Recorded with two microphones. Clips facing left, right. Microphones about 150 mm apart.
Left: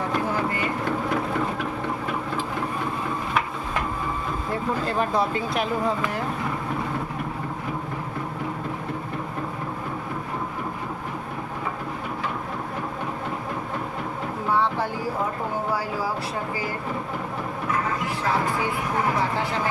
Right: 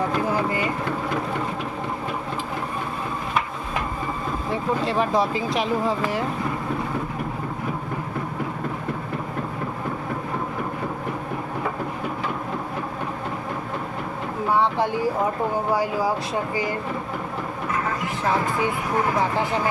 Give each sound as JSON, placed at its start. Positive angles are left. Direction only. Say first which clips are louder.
{"t": 4.5, "sound": "speech", "louder": "right 2 dB", "side_deg": 0}
{"t": 14.5, "sound": "a sound", "louder": "right 3 dB", "side_deg": -15}
{"t": 15.7, "sound": "speech", "louder": "right 5 dB", "side_deg": -15}
{"t": 19.4, "sound": "speech", "louder": "right 3 dB", "side_deg": -15}